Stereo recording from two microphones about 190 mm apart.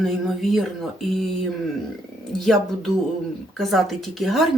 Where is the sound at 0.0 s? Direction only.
Centre (ahead or behind).